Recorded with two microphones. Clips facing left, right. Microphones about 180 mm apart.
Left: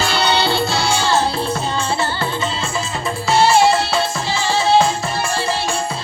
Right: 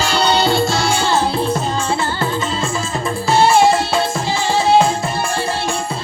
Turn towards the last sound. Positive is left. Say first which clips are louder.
# right 2 dB
turn(degrees=-55)  # may be behind; listen again after turning